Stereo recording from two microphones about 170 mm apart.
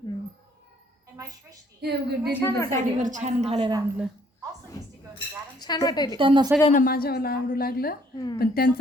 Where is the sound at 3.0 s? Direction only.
45° right (ahead or behind).